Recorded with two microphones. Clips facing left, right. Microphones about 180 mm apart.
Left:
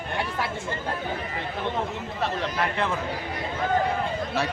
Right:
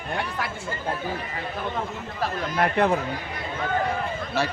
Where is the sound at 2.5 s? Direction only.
40° right (ahead or behind).